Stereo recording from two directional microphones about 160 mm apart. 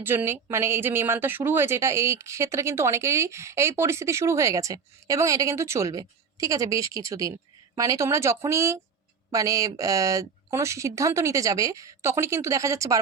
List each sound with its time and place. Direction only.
0.0 s speech: 15° right (ahead or behind)